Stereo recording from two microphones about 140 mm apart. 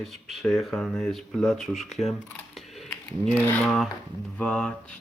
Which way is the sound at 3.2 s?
10° left (ahead or behind).